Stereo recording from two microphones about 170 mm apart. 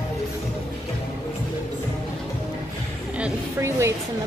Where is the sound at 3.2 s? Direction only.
10° right (ahead or behind).